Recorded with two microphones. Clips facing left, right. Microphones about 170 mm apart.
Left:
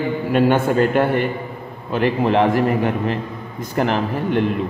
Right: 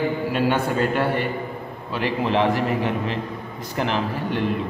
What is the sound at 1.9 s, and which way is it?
A man's voice, 50° left (ahead or behind).